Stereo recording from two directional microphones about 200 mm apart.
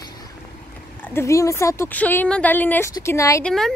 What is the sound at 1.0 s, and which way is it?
A woman's voice, 10° left (ahead or behind).